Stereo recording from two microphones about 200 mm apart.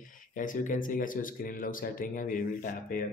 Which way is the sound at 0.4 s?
40° left (ahead or behind).